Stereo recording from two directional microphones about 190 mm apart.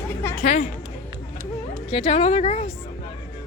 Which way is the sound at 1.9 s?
35° left (ahead or behind).